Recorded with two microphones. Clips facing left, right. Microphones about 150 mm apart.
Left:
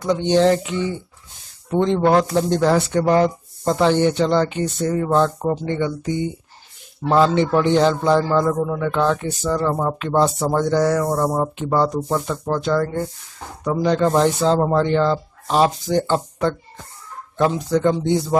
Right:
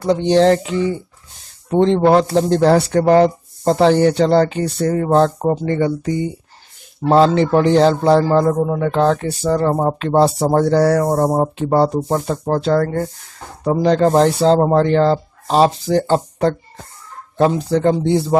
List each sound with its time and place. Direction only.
0.0 s speech: 35° right (ahead or behind)
4.7 s speech: 65° right (ahead or behind)
5.0 s speech: 35° right (ahead or behind)